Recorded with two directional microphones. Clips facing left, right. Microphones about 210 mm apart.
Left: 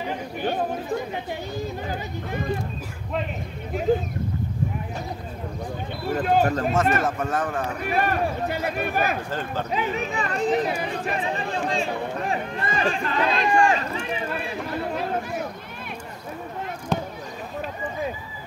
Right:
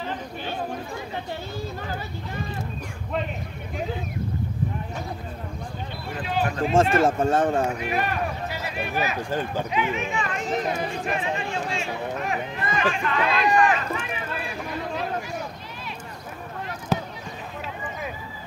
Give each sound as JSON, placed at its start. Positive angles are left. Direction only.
{"t": 3.9, "sound": "speech", "side_deg": 45}
{"t": 6.1, "sound": "speech", "side_deg": 45}
{"t": 6.7, "sound": "speech", "side_deg": -30}
{"t": 8.0, "sound": "speech", "side_deg": 50}
{"t": 9.3, "sound": "speech", "side_deg": -15}
{"t": 9.7, "sound": "speech", "side_deg": 35}
{"t": 16.9, "sound": "basketball bounce", "side_deg": -5}